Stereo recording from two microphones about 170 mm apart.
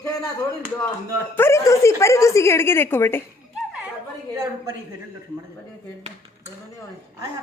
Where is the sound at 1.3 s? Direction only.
15° left (ahead or behind).